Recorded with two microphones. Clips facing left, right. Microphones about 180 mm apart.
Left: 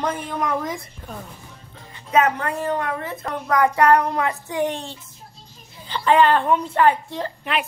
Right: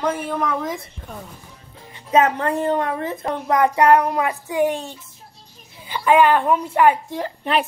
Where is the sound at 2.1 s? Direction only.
30° right (ahead or behind); by 7.3 s 10° right (ahead or behind).